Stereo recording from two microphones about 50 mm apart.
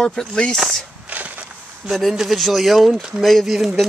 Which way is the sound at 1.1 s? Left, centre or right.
Right.